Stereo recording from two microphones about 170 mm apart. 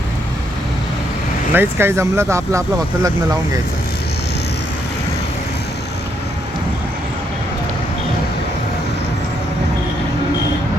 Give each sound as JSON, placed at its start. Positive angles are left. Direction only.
{"t": 1.5, "sound": "speech", "side_deg": -15}